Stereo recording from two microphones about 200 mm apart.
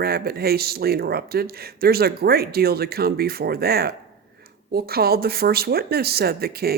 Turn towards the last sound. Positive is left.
turn(degrees=-50)  # may be behind; listen again after turning